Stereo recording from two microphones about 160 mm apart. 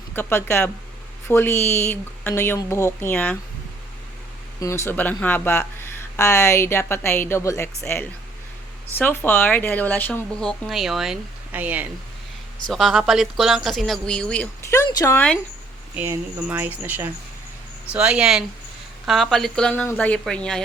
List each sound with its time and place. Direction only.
0.1 s speech: 15° left (ahead or behind)
4.6 s speech: 15° left (ahead or behind); by 11.9 s 10° right (ahead or behind)
12.6 s speech: centre (ahead or behind)
14.8 s speech: 20° left (ahead or behind)
16.0 s speech: 10° right (ahead or behind); by 20.6 s 5° left (ahead or behind)